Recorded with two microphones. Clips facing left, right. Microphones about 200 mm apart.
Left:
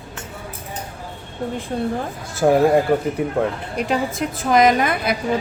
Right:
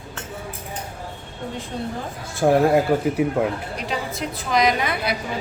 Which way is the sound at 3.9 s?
50° left (ahead or behind).